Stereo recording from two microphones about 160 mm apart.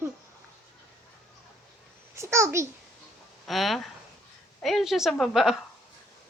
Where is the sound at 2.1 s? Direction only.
15° right (ahead or behind).